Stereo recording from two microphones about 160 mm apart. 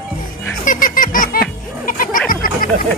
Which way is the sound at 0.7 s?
60° left (ahead or behind).